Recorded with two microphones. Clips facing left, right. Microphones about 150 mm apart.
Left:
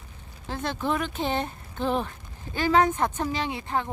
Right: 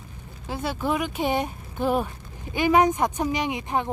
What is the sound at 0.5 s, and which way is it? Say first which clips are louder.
Speech: right 2 dB; 10° right (ahead or behind).